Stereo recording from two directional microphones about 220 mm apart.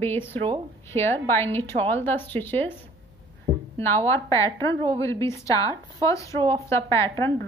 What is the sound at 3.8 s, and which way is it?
A woman's voice, 10° left (ahead or behind).